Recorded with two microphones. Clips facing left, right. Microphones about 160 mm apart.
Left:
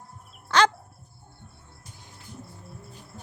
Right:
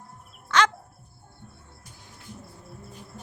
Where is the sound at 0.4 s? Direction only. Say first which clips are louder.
Left 2 dB; 35° left (ahead or behind).